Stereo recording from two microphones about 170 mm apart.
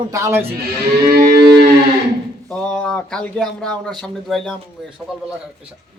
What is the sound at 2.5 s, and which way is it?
Speech, 5° left (ahead or behind).